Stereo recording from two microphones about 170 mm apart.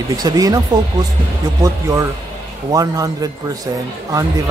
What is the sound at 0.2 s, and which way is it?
Speech, 20° right (ahead or behind).